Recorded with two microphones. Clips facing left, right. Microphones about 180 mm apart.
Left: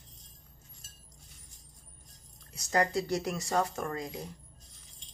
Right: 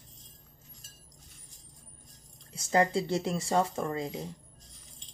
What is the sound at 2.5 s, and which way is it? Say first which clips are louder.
Speech: right 3 dB; 25° right (ahead or behind).